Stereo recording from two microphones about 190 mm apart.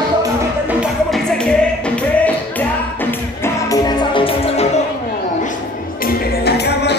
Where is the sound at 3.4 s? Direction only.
20° left (ahead or behind).